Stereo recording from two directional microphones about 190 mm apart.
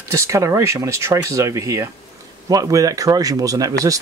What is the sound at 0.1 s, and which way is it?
Speech, 15° right (ahead or behind).